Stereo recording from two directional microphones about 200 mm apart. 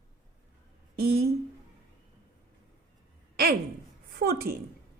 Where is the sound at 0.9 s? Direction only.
50° right (ahead or behind).